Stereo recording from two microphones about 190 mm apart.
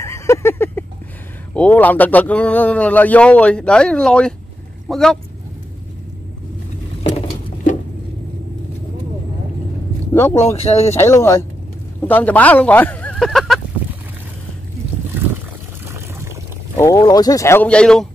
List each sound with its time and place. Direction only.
0.0 s a sound: 15° left (ahead or behind)
1.5 s speech: 10° left (ahead or behind)
7.0 s patter: 30° left (ahead or behind)
10.1 s speech: 10° left (ahead or behind)
10.5 s speech: 35° left (ahead or behind)
11.0 s speech: 15° left (ahead or behind)
15.9 s a sound: 15° right (ahead or behind)
16.7 s speech: 15° left (ahead or behind)